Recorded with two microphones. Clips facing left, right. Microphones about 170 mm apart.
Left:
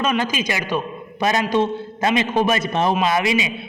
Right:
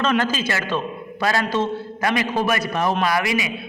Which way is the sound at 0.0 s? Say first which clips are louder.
Even; 10° left (ahead or behind).